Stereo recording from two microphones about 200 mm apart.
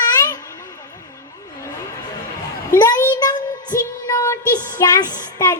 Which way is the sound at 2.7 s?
15° left (ahead or behind).